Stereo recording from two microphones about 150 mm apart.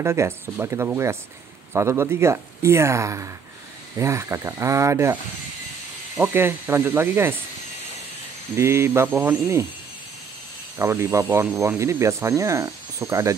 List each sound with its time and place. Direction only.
0.0 s speech: 15° right (ahead or behind)
6.2 s speech: 15° right (ahead or behind)
8.5 s speech: 15° right (ahead or behind)
10.8 s speech: 20° right (ahead or behind)